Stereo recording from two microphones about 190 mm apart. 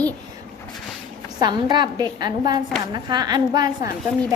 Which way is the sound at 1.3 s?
20° right (ahead or behind).